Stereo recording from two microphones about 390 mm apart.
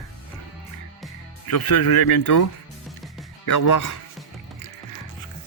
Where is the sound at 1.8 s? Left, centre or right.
Left.